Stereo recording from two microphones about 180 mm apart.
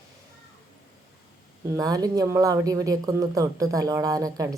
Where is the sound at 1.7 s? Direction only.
20° right (ahead or behind).